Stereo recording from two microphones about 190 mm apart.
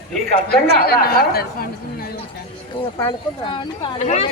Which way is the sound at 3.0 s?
25° left (ahead or behind).